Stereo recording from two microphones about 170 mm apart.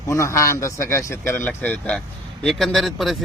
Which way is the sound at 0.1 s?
15° left (ahead or behind).